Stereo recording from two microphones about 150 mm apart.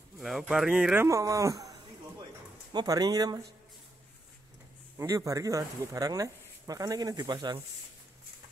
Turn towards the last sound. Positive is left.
turn(degrees=-30)  # may be behind; listen again after turning